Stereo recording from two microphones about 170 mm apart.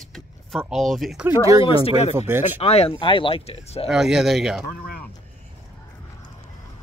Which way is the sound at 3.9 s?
Centre (ahead or behind).